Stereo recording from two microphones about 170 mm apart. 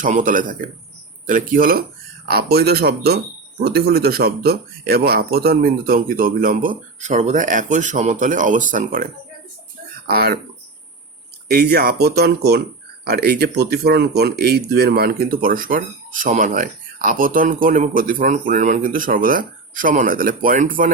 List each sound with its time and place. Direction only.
0.0 s a man's voice: 50° right (ahead or behind)
10.1 s speech: 65° right (ahead or behind)
11.4 s speech: 70° right (ahead or behind); by 20.9 s 55° right (ahead or behind)